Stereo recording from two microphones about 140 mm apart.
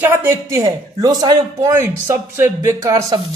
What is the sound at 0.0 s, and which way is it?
Speech, 15° right (ahead or behind).